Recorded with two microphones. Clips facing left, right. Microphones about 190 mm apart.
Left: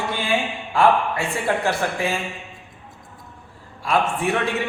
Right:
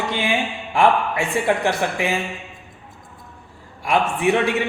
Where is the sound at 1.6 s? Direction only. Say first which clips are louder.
Right 1 dB; 15° right (ahead or behind).